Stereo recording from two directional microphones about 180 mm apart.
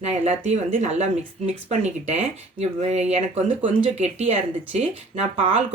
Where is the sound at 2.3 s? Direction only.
35° right (ahead or behind).